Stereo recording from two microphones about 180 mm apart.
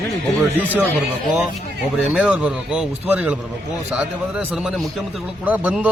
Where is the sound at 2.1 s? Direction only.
5° right (ahead or behind).